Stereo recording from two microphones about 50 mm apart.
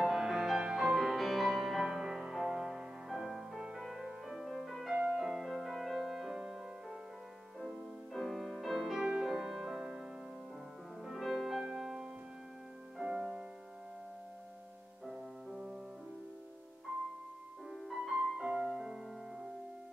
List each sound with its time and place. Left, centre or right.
0.0 s music: centre
7.6 s music: centre
9.0 s music: centre
11.6 s music: centre
15.0 s music: centre
16.9 s music: right
17.6 s music: centre
18.4 s music: centre
18.7 s music: centre